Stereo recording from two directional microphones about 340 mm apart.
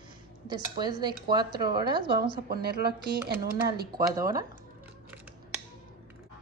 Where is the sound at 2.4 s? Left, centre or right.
Right.